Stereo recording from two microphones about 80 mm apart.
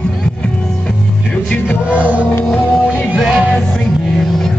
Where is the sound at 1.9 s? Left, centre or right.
Centre.